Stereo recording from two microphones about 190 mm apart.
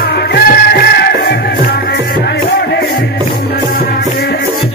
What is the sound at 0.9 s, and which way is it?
Music, 55° left (ahead or behind).